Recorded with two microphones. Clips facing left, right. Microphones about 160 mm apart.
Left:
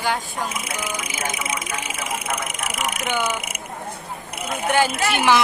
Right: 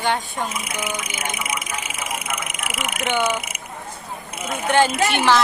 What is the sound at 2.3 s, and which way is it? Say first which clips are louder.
Speech: left 2 dB; 40° left (ahead or behind).